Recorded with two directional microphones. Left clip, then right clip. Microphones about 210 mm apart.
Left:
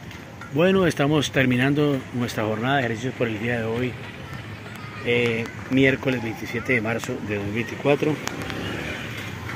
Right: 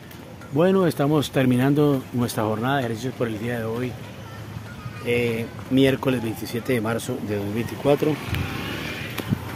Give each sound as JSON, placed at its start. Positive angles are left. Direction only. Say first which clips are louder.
{"t": 0.6, "sound": "speech", "louder": "even", "side_deg": -5}
{"t": 3.2, "sound": "speech", "louder": "left 2 dB", "side_deg": 5}
{"t": 5.0, "sound": "speech", "louder": "left 1 dB", "side_deg": 0}
{"t": 5.8, "sound": "speech", "louder": "even", "side_deg": -15}